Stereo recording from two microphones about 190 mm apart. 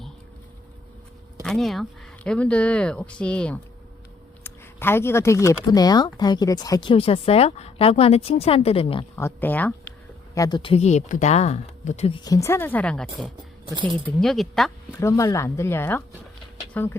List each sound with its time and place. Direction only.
1.4 s speech: centre (ahead or behind); by 9.0 s 30° left (ahead or behind)
9.1 s speech: 10° left (ahead or behind)
10.3 s speech: 20° left (ahead or behind); by 14.9 s centre (ahead or behind)
15.0 s speech: 15° left (ahead or behind)